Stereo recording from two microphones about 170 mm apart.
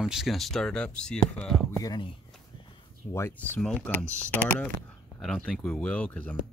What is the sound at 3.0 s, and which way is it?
Speech, 10° left (ahead or behind).